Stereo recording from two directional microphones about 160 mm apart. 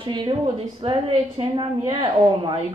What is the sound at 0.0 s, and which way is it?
A woman's voice, 30° right (ahead or behind).